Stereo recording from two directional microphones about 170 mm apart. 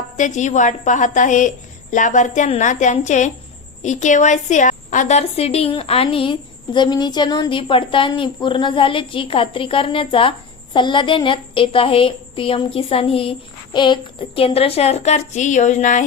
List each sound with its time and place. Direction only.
0.2 s a woman's voice: 45° left (ahead or behind)